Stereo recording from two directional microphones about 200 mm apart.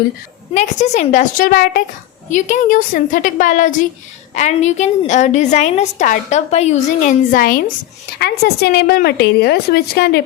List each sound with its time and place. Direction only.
0.5 s a woman's voice: 35° left (ahead or behind); by 10.2 s 55° left (ahead or behind)